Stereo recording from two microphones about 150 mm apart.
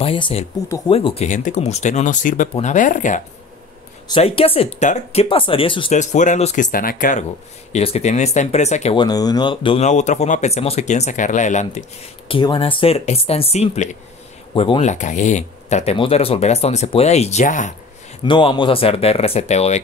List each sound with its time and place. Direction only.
0.0 s speech: 40° left (ahead or behind); by 3.2 s 55° left (ahead or behind)
4.1 s speech: 40° left (ahead or behind)
5.9 s speech: 55° left (ahead or behind)
7.7 s speech: 45° left (ahead or behind)
8.9 s speech: 25° left (ahead or behind)
9.8 s speech: 50° left (ahead or behind)
12.3 s speech: 35° left (ahead or behind)
14.5 s speech: 35° left (ahead or behind)
14.8 s speech: 55° left (ahead or behind)
18.2 s speech: 30° left (ahead or behind); by 19.8 s 45° left (ahead or behind)